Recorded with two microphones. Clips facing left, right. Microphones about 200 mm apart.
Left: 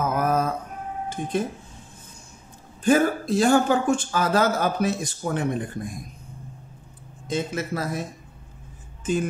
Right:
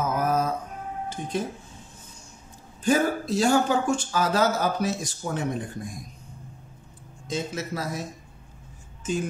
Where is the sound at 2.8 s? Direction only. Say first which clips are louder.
Left 3 dB; 55° left (ahead or behind).